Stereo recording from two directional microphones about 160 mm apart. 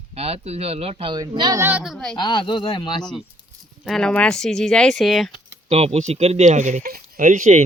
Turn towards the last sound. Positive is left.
turn(degrees=-55)  # may be behind; listen again after turning